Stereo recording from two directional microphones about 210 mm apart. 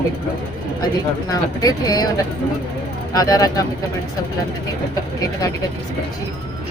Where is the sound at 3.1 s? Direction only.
15° left (ahead or behind).